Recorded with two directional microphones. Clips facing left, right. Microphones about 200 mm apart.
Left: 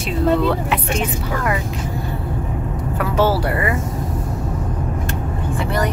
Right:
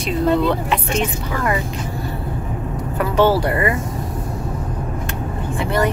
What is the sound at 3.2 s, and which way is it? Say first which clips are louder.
Speech: right 3 dB; 5° left (ahead or behind).